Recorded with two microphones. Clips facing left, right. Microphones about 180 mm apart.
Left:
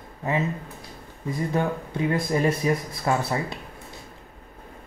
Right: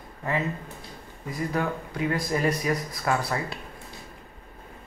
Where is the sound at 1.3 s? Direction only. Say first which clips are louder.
Left 3 dB; 25° left (ahead or behind).